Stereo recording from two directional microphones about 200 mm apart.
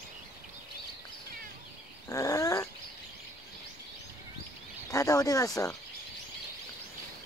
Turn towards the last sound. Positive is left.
turn(degrees=15)  # may be behind; listen again after turning